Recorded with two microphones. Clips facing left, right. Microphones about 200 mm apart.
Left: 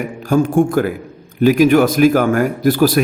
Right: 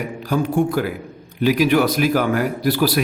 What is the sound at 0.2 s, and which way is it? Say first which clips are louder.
A man's voice: left 6 dB; 50° left (ahead or behind).